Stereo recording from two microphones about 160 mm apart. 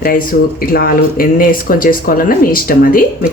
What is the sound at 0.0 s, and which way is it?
Speech, 60° left (ahead or behind).